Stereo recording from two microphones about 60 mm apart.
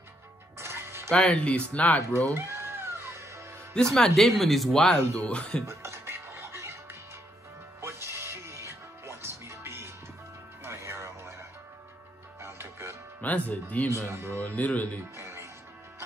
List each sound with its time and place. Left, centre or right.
0.6 s music: right
1.3 s speech: centre
2.1 s music: right
3.7 s speech: centre
5.1 s speech: centre
5.7 s music: right
13.2 s speech: left
13.8 s speech: right
14.4 s speech: left
15.1 s music: right